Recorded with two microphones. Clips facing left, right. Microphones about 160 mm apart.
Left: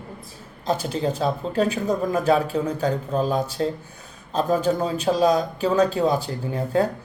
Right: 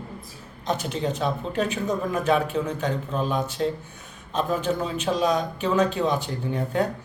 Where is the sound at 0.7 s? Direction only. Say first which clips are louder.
Left 3 dB; 30° left (ahead or behind).